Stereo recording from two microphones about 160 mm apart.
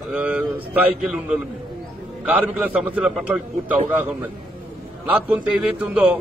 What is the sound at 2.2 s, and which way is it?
A man's voice, 10° right (ahead or behind).